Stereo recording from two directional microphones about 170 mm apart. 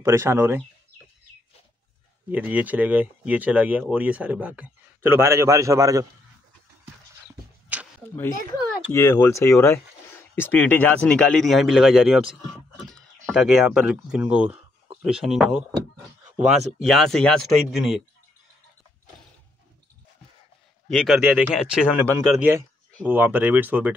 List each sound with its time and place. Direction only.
0.0 s speech: 15° right (ahead or behind)
2.3 s speech: 10° right (ahead or behind)
8.0 s speech: 15° left (ahead or behind)
20.9 s speech: centre (ahead or behind)
22.0 s speech: 15° right (ahead or behind)